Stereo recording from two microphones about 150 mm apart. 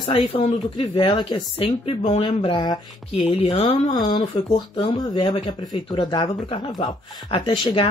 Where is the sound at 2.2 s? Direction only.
30° left (ahead or behind).